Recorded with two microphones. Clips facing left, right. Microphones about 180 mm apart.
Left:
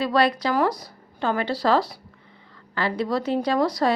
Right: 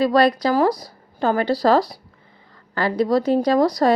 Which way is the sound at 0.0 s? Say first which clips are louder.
Right 5 dB; 40° right (ahead or behind).